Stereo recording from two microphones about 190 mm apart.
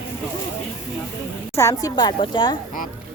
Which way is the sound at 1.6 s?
15° left (ahead or behind).